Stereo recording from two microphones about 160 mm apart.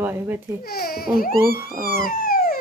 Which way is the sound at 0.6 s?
70° left (ahead or behind).